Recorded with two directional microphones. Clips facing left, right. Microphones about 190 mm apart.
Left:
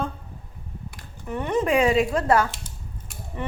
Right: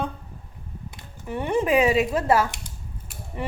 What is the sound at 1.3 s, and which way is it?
Speech, 10° right (ahead or behind).